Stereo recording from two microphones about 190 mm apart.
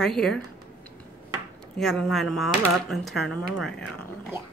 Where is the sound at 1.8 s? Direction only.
Centre (ahead or behind).